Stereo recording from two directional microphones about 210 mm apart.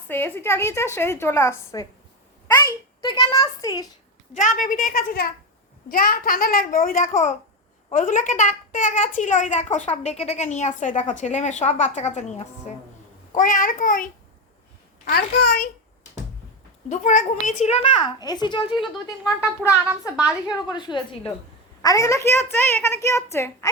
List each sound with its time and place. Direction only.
0.1 s a woman's voice: 10° left (ahead or behind)
4.4 s a woman's voice: 35° left (ahead or behind)
16.9 s a child's voice: 35° left (ahead or behind)
18.7 s speech: centre (ahead or behind)
20.7 s a child's voice: 20° left (ahead or behind)